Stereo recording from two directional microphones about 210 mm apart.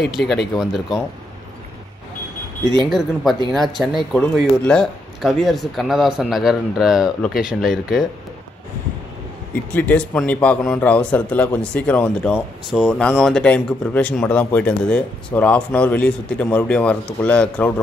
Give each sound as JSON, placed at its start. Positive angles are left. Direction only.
{"t": 0.1, "sound": "speech", "side_deg": 0}
{"t": 2.6, "sound": "speech", "side_deg": -20}
{"t": 3.5, "sound": "speech", "side_deg": 0}
{"t": 9.7, "sound": "a man's voice", "side_deg": 5}